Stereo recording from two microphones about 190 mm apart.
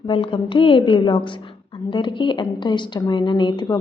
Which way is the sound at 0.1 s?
25° left (ahead or behind).